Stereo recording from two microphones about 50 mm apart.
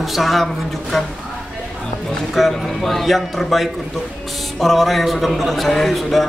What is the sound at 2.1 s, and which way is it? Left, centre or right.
A man's voice, centre.